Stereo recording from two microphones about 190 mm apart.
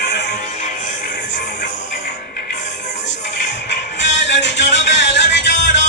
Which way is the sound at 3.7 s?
70° left (ahead or behind).